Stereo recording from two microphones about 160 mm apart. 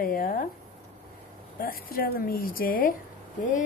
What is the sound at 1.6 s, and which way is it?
A woman's voice, 65° left (ahead or behind).